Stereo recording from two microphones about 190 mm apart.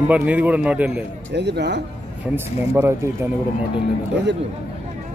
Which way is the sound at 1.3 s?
65° right (ahead or behind).